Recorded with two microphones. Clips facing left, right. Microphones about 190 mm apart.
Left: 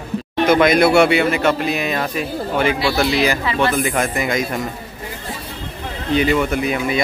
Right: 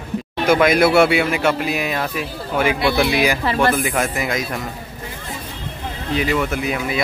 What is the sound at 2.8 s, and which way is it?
Speech, 55° right (ahead or behind).